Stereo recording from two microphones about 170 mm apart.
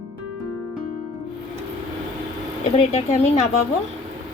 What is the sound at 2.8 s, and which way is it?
Speech, 40° left (ahead or behind).